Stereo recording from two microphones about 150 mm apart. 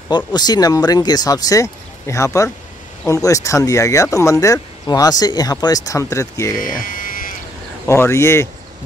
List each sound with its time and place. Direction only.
0.1 s speech: 30° left (ahead or behind)
6.6 s electric shaver: 65° left (ahead or behind)
7.8 s speech: 15° left (ahead or behind)